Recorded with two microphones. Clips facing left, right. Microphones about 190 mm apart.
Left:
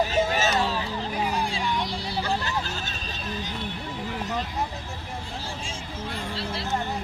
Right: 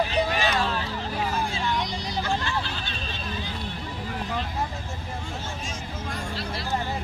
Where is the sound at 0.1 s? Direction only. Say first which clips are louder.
Left 1 dB; 45° left (ahead or behind).